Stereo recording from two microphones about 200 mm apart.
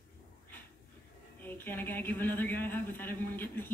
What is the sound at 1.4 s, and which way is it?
Speech, 10° left (ahead or behind).